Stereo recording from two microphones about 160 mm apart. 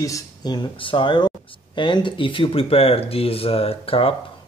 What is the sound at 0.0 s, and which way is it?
Speech, 25° left (ahead or behind).